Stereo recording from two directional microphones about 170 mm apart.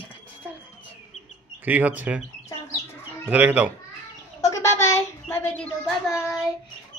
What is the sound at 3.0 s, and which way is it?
Bird, 10° right (ahead or behind).